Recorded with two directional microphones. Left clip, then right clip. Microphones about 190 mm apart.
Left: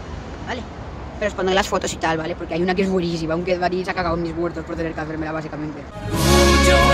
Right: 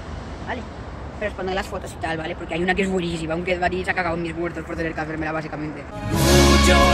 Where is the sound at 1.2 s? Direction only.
55° left (ahead or behind).